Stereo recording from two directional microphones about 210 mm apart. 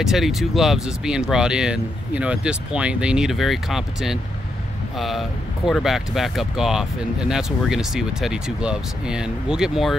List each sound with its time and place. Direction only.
0.0 s speech: centre (ahead or behind)